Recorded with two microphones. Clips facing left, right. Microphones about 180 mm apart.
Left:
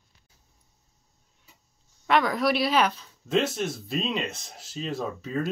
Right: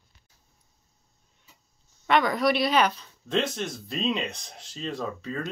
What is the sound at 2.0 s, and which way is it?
Speech, centre (ahead or behind).